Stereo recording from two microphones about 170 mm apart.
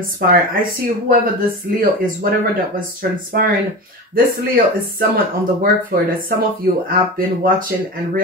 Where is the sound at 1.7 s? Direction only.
65° right (ahead or behind).